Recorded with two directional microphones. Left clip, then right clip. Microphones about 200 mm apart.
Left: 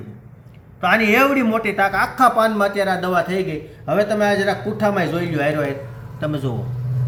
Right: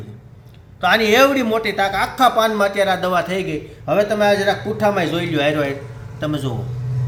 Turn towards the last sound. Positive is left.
turn(degrees=-5)  # may be behind; listen again after turning